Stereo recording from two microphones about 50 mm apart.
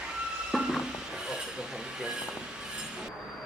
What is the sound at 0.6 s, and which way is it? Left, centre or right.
Music, centre.